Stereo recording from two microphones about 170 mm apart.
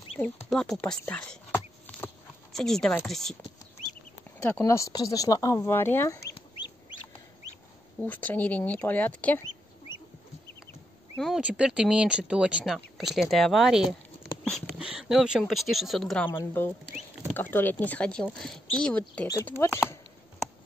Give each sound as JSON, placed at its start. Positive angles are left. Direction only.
{"t": 0.5, "sound": "a sound", "side_deg": 5}
{"t": 2.5, "sound": "speech", "side_deg": 0}
{"t": 4.4, "sound": "speech", "side_deg": 15}
{"t": 8.0, "sound": "speech", "side_deg": 10}
{"t": 11.1, "sound": "speech", "side_deg": 0}
{"t": 17.3, "sound": "speech", "side_deg": 10}